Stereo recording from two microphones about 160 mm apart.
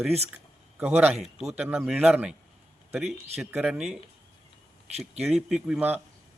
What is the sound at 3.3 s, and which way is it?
A man's voice, 5° right (ahead or behind).